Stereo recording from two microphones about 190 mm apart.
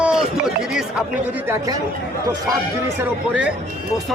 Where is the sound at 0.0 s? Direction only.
5° right (ahead or behind).